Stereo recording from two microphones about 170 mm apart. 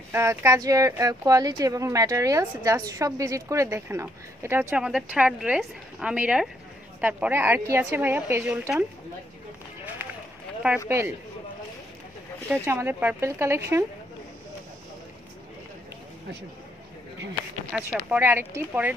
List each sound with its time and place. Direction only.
0.1 s speech: 15° right (ahead or behind)
10.9 s speech: 15° right (ahead or behind)
12.4 s speech: 10° right (ahead or behind)
17.7 s speech: centre (ahead or behind)
18.2 s speech: 10° right (ahead or behind)